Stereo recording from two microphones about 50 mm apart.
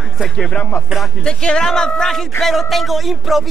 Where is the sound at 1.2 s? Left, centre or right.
Centre.